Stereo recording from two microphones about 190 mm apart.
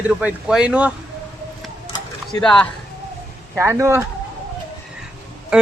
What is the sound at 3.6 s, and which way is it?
Speech, 15° right (ahead or behind).